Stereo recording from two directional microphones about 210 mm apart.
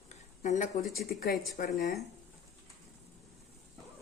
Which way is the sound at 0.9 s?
45° left (ahead or behind).